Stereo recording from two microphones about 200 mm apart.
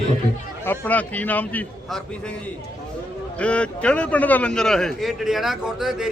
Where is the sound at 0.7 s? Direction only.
10° left (ahead or behind).